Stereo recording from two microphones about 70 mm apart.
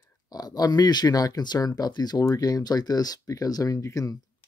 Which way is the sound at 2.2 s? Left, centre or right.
Left.